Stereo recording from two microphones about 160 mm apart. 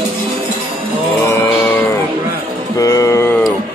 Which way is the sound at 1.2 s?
15° left (ahead or behind).